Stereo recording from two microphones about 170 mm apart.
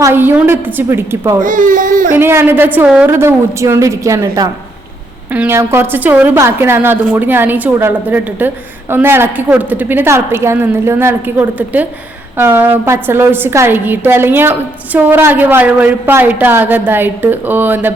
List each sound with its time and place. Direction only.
0.0 s a woman's voice: 10° right (ahead or behind)
1.4 s speech: 50° right (ahead or behind)
2.1 s a woman's voice: 15° right (ahead or behind)